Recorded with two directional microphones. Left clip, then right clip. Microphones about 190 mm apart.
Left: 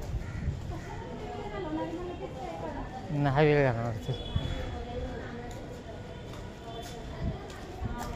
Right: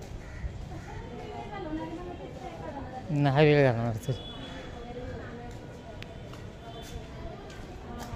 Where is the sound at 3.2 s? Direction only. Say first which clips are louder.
Right 2 dB; 45° right (ahead or behind).